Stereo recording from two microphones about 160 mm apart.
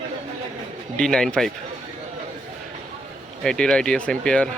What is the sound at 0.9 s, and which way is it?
Speech, 5° left (ahead or behind).